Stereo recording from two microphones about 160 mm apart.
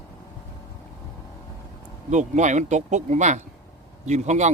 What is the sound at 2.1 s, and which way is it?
Speech, 50° right (ahead or behind).